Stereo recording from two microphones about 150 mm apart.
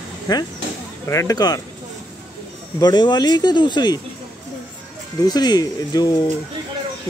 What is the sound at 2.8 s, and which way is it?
Speech, 30° left (ahead or behind).